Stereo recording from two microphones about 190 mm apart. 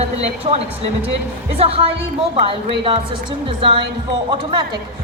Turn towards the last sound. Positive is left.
turn(degrees=-25)  # may be behind; listen again after turning